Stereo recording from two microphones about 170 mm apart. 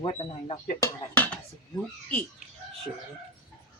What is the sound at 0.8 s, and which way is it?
Speech, 10° left (ahead or behind).